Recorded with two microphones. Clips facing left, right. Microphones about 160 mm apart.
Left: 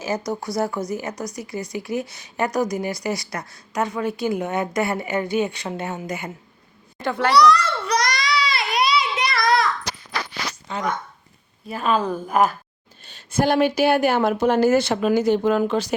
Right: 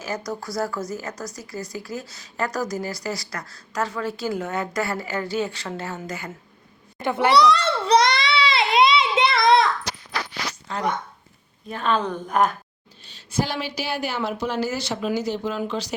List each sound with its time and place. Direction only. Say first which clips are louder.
0.3 s a woman's voice: left 3 dB; 20° left (ahead or behind)
7.1 s crying: left 1 dB; 25° right (ahead or behind)
10.7 s a woman's voice: right 1 dB; centre (ahead or behind)
13.1 s speech: left 6 dB; 50° left (ahead or behind)